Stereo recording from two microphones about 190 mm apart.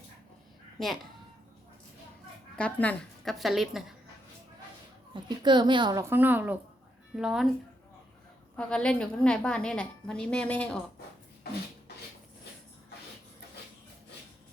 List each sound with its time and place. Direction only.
2.6 s a woman's voice: 5° left (ahead or behind)
5.1 s a woman's voice: 25° right (ahead or behind); by 7.5 s centre (ahead or behind)
8.5 s a woman's voice: 5° left (ahead or behind)